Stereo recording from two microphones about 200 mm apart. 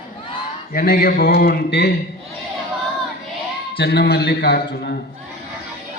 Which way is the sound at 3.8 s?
55° left (ahead or behind).